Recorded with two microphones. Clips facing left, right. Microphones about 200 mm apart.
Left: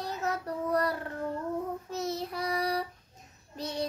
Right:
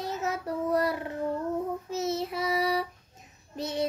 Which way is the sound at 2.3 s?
5° right (ahead or behind).